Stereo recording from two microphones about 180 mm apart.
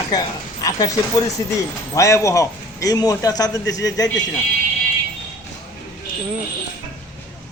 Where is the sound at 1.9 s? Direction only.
15° left (ahead or behind).